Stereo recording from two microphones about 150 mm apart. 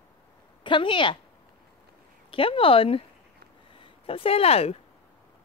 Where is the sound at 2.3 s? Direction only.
35° left (ahead or behind).